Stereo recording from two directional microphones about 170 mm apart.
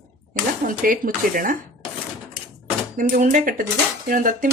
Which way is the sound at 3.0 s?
55° right (ahead or behind).